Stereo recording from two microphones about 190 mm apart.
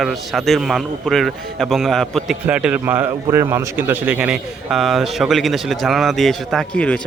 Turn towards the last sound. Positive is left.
turn(degrees=5)  # may be behind; listen again after turning